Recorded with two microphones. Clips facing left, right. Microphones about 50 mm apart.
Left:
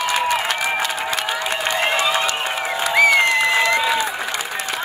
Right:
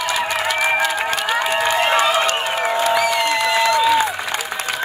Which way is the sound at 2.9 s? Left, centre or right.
Left.